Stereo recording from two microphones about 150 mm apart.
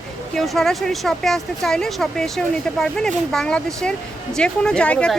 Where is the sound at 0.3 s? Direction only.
Centre (ahead or behind).